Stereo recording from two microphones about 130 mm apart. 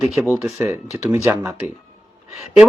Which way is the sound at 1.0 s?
15° right (ahead or behind).